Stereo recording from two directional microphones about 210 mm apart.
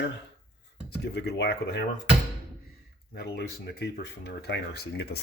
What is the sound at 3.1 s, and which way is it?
Speech, 50° left (ahead or behind).